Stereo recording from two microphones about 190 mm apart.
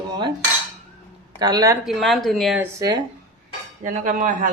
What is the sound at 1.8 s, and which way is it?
Speech, centre (ahead or behind).